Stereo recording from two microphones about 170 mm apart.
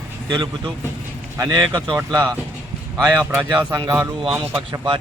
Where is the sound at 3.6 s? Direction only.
20° right (ahead or behind).